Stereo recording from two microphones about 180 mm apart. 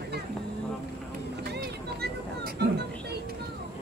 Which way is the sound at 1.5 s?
60° right (ahead or behind).